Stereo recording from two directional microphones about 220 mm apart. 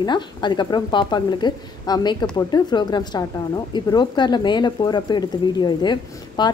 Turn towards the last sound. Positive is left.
turn(degrees=20)  # may be behind; listen again after turning